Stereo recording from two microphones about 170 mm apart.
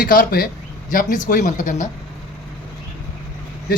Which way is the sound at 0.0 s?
55° left (ahead or behind).